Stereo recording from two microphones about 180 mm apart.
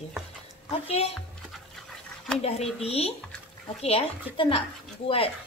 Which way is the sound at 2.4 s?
35° left (ahead or behind).